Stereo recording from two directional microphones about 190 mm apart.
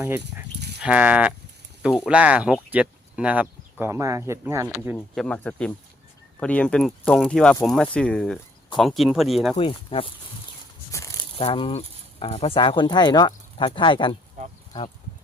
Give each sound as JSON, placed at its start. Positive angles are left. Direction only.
{"t": 0.0, "sound": "speech", "side_deg": -10}
{"t": 5.1, "sound": "speech", "side_deg": 5}
{"t": 9.6, "sound": "speech", "side_deg": 25}
{"t": 11.3, "sound": "speech", "side_deg": 30}